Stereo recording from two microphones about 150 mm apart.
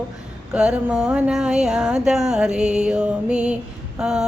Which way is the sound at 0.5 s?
5° right (ahead or behind).